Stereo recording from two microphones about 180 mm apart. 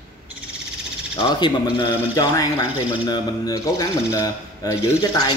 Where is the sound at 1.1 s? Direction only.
20° left (ahead or behind).